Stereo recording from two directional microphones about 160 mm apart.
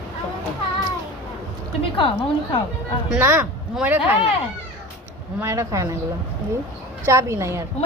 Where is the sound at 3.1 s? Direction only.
10° right (ahead or behind).